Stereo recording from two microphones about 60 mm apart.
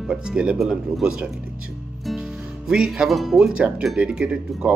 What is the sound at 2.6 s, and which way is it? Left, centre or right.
Speech, centre.